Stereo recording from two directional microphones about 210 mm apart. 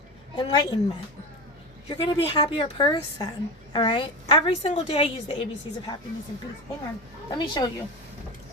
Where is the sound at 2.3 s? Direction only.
25° left (ahead or behind).